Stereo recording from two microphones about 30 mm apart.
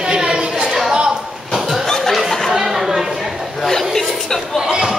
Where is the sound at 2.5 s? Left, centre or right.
Centre.